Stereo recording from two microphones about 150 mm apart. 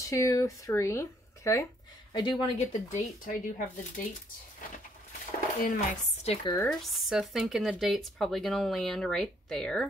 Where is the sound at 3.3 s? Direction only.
60° left (ahead or behind).